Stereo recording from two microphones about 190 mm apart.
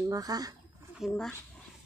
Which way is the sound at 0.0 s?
20° right (ahead or behind).